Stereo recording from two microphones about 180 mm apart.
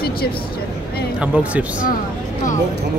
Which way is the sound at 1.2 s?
5° right (ahead or behind).